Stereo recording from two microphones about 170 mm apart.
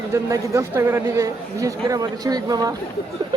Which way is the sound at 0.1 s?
15° right (ahead or behind).